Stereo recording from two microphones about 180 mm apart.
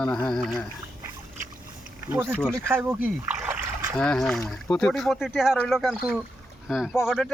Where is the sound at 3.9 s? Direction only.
5° left (ahead or behind).